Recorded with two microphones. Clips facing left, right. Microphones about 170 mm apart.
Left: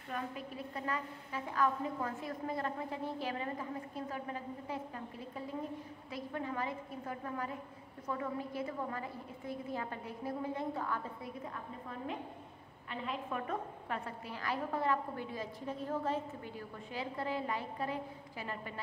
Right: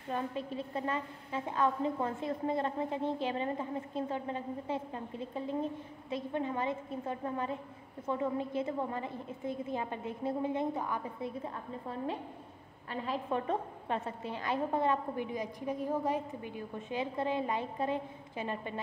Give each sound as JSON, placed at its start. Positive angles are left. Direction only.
{"t": 0.1, "sound": "a woman's voice", "side_deg": -30}
{"t": 13.0, "sound": "a woman's voice", "side_deg": -30}